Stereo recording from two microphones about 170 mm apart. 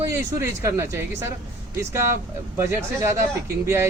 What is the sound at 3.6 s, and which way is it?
Speech, 15° right (ahead or behind).